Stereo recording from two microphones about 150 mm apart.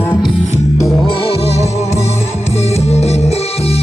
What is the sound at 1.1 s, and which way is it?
Music, 40° left (ahead or behind).